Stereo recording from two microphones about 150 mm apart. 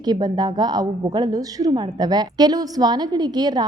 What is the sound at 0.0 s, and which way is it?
A woman's voice, 25° right (ahead or behind).